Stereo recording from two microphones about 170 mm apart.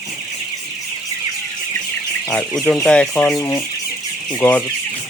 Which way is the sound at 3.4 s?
20° left (ahead or behind).